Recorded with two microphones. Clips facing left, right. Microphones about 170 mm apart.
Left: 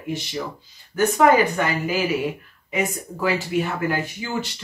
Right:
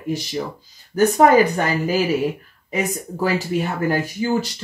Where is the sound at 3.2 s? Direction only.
40° right (ahead or behind).